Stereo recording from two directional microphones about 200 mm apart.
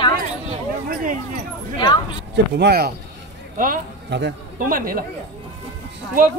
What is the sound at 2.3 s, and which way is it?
Speech, 55° right (ahead or behind).